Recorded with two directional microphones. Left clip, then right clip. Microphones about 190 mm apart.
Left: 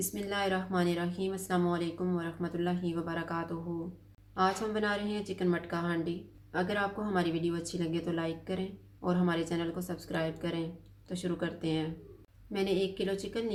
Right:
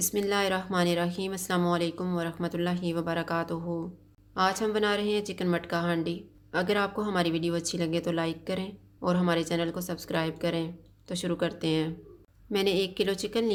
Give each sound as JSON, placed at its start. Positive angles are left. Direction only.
{"t": 0.1, "sound": "speech", "side_deg": -50}